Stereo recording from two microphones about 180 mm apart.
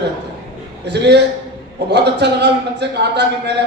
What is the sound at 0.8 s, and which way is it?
A man's voice, 70° right (ahead or behind).